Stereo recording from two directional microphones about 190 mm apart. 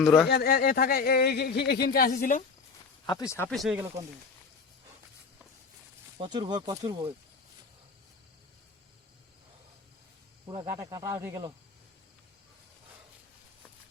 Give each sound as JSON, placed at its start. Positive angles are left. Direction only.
{"t": 0.0, "sound": "speech", "side_deg": 0}
{"t": 0.3, "sound": "speech", "side_deg": 55}
{"t": 3.1, "sound": "speech", "side_deg": 15}
{"t": 3.5, "sound": "speech", "side_deg": 0}
{"t": 6.1, "sound": "speech", "side_deg": -25}
{"t": 10.4, "sound": "speech", "side_deg": -20}